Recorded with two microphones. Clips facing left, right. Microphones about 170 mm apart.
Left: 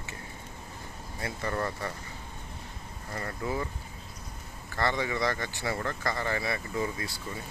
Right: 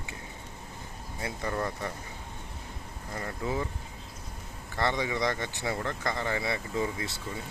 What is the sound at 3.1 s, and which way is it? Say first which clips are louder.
Speech: even; 10° right (ahead or behind).